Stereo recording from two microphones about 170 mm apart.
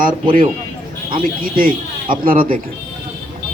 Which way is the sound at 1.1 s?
55° right (ahead or behind).